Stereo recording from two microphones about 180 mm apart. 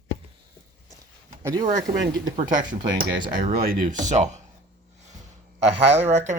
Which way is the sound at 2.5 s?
45° right (ahead or behind).